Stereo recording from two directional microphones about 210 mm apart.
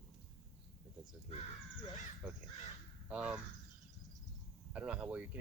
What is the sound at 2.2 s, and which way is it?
Speech, 5° right (ahead or behind).